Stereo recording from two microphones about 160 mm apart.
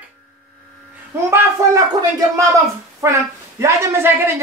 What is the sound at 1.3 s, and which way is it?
Speech, 15° right (ahead or behind).